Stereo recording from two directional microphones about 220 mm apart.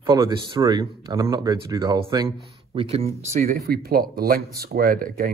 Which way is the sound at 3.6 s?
45° right (ahead or behind).